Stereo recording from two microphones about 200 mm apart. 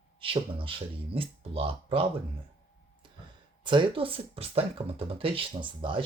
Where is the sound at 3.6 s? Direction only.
25° right (ahead or behind).